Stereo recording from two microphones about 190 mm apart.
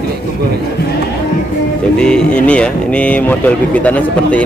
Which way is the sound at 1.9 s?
5° left (ahead or behind).